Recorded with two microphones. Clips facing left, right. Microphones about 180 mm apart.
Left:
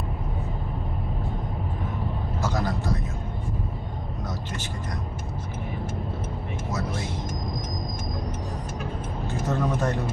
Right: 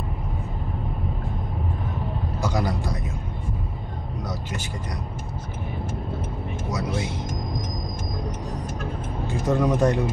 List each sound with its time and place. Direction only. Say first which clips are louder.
2.4 s a man's voice: right 2 dB; 15° right (ahead or behind)
9.5 s speech: right 6 dB; 15° right (ahead or behind)